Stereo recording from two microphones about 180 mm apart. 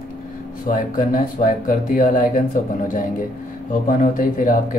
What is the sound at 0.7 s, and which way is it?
Speech, 50° left (ahead or behind).